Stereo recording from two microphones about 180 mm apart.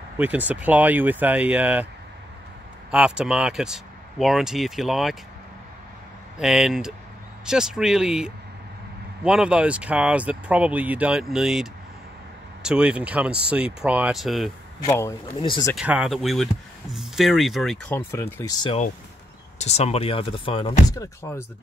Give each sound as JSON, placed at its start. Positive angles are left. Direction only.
{"t": 0.2, "sound": "speech", "side_deg": -10}
{"t": 2.9, "sound": "speech", "side_deg": -5}
{"t": 6.3, "sound": "speech", "side_deg": 0}
{"t": 14.9, "sound": "speech", "side_deg": 15}
{"t": 15.7, "sound": "speech", "side_deg": -5}
{"t": 17.9, "sound": "speech", "side_deg": 15}
{"t": 19.6, "sound": "speech", "side_deg": 35}
{"t": 21.0, "sound": "speech", "side_deg": 15}